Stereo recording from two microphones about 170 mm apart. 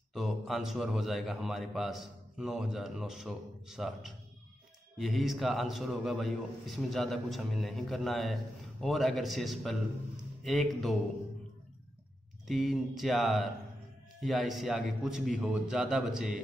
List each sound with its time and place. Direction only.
0.1 s a man's voice: centre (ahead or behind)
12.4 s a man's voice: centre (ahead or behind)